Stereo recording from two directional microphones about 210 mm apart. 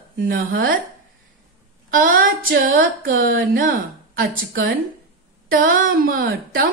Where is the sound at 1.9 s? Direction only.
40° right (ahead or behind).